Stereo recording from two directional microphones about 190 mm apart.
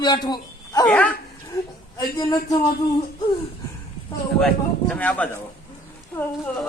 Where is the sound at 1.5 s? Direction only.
20° left (ahead or behind).